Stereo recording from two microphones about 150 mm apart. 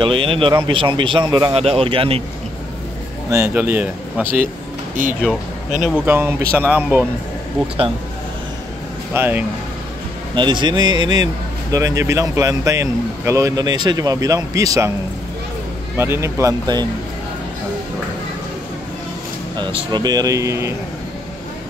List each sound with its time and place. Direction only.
0.0 s speech: 35° right (ahead or behind)
1.5 s speech: 40° right (ahead or behind)
3.3 s speech: 15° right (ahead or behind)
5.2 s speech: 5° right (ahead or behind)
6.0 s speech: 15° right (ahead or behind)
7.6 s speech: 40° right (ahead or behind)
9.1 s speech: 15° right (ahead or behind)
10.3 s speech: 30° right (ahead or behind)
16.0 s speech: 15° right (ahead or behind)
19.5 s speech: 30° right (ahead or behind)